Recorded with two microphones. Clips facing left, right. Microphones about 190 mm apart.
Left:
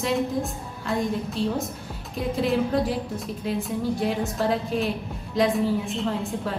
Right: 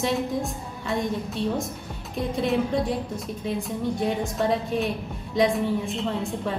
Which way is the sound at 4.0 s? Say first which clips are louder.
Even; centre (ahead or behind).